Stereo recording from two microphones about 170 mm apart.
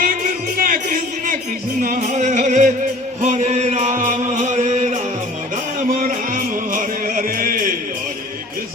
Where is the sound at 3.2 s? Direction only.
45° right (ahead or behind).